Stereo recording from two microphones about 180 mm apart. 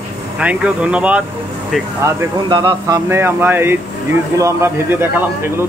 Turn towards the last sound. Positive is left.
turn(degrees=-15)  # may be behind; listen again after turning